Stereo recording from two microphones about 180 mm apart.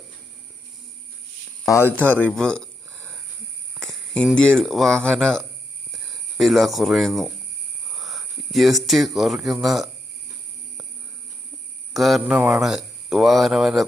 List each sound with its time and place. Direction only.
1.6 s speech: 15° left (ahead or behind); by 7.3 s centre (ahead or behind)
7.9 s a sound: centre (ahead or behind)
8.9 s speech: centre (ahead or behind)
11.9 s speech: centre (ahead or behind)